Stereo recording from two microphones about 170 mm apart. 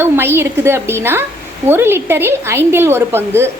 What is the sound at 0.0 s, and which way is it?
A woman's voice, 15° right (ahead or behind).